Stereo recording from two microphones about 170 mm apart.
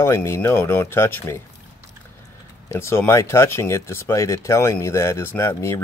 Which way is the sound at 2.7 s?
15° left (ahead or behind).